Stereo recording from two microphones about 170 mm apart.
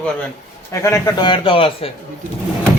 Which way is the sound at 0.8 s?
15° left (ahead or behind).